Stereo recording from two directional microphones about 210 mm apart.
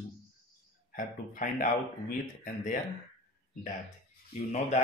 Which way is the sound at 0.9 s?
40° left (ahead or behind).